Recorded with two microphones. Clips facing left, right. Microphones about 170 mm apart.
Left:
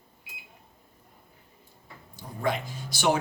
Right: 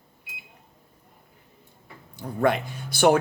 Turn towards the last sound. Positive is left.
turn(degrees=-55)  # may be behind; listen again after turning